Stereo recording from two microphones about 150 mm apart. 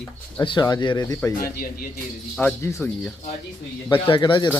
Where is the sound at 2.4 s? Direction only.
20° left (ahead or behind).